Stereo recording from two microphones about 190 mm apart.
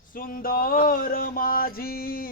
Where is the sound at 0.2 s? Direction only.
50° left (ahead or behind).